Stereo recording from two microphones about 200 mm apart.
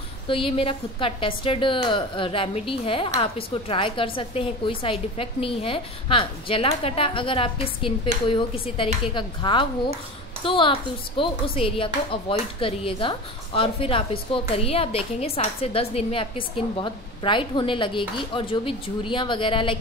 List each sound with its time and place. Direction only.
0.3 s a woman's voice: 25° left (ahead or behind)